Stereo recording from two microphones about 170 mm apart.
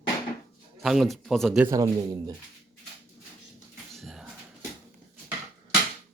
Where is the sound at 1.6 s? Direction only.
20° right (ahead or behind).